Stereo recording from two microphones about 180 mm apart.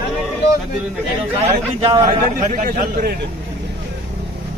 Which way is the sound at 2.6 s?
50° right (ahead or behind).